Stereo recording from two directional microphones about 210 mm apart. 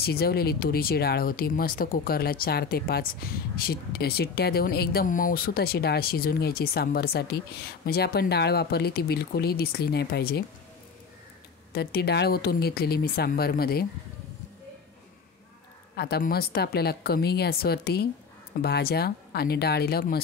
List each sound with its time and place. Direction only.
0.0 s speech: 50° left (ahead or behind)
11.7 s speech: 50° left (ahead or behind)
16.0 s speech: 50° left (ahead or behind)